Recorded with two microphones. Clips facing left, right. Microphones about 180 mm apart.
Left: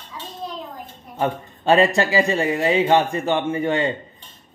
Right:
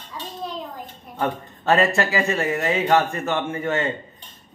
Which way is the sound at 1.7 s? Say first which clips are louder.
Left 3 dB; 15° left (ahead or behind).